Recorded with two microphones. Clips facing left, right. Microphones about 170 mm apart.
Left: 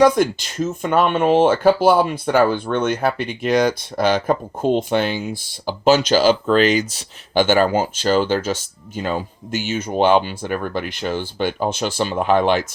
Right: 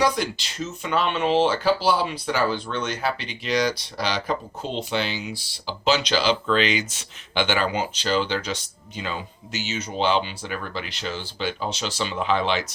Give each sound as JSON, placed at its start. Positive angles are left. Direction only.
{"t": 0.0, "sound": "speech", "side_deg": 50}